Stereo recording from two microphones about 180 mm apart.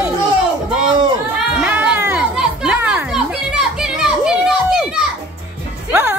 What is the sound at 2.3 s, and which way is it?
Children playing, 5° right (ahead or behind).